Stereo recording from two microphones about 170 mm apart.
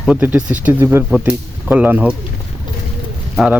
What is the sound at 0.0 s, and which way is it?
Speech, 5° right (ahead or behind).